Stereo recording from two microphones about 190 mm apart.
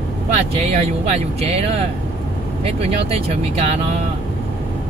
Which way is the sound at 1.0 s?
35° right (ahead or behind).